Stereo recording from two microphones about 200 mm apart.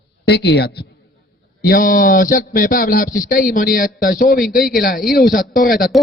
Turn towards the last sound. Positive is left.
turn(degrees=45)  # may be behind; listen again after turning